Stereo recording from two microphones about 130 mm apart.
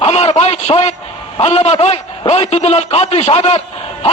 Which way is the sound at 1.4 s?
55° left (ahead or behind).